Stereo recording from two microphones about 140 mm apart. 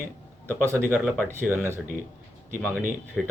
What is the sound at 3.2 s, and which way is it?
Speech, centre (ahead or behind).